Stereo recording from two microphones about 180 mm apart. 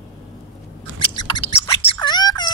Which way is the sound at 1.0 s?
30° left (ahead or behind).